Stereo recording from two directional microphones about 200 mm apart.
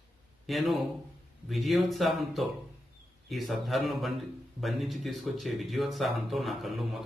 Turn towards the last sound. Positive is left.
turn(degrees=0)  # may be behind; listen again after turning